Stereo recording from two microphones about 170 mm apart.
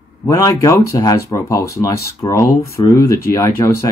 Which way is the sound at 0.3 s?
20° left (ahead or behind).